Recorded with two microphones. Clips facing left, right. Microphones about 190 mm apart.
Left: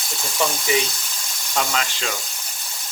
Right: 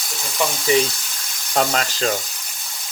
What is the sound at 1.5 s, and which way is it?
Speech, 45° right (ahead or behind).